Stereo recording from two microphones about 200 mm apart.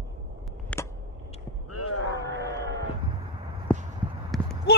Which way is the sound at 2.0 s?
65° right (ahead or behind).